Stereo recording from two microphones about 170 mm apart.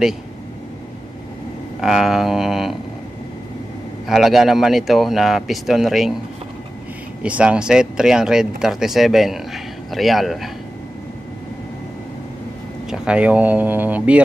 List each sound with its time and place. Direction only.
1.8 s speech: 5° right (ahead or behind)
4.1 s speech: centre (ahead or behind)
7.2 s speech: 5° right (ahead or behind)
12.9 s speech: 5° right (ahead or behind)